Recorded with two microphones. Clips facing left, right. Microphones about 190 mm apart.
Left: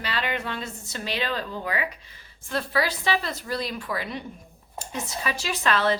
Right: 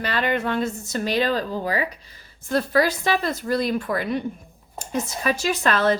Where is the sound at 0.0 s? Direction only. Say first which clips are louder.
Right 6 dB; 45° right (ahead or behind).